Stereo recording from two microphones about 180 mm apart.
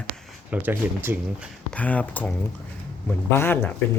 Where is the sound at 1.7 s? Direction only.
10° left (ahead or behind).